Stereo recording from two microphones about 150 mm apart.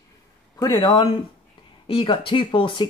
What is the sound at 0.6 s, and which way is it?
Speech, 30° left (ahead or behind).